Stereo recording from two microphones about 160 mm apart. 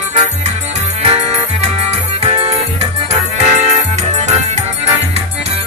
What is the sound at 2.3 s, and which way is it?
Music, 40° right (ahead or behind).